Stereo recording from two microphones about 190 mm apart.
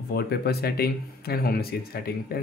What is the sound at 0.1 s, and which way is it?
Speech, 55° left (ahead or behind).